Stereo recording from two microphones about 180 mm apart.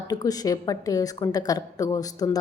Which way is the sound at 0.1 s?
20° left (ahead or behind).